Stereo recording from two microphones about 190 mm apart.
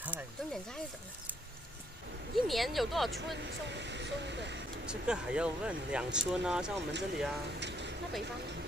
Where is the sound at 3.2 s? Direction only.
70° right (ahead or behind).